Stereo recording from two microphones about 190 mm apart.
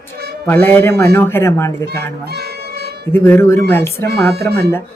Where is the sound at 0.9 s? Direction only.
55° right (ahead or behind).